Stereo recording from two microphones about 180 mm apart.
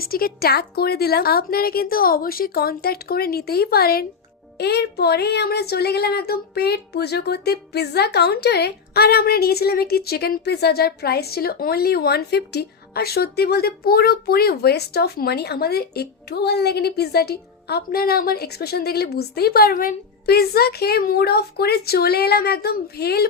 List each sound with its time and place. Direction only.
0.0 s speech: 55° left (ahead or behind)